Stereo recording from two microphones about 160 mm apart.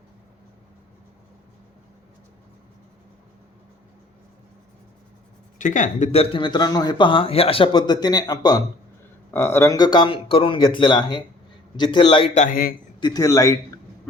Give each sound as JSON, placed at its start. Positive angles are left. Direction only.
{"t": 5.5, "sound": "speech", "side_deg": 50}
{"t": 9.3, "sound": "speech", "side_deg": 15}
{"t": 12.3, "sound": "a man's voice", "side_deg": 45}
{"t": 13.0, "sound": "speech", "side_deg": 25}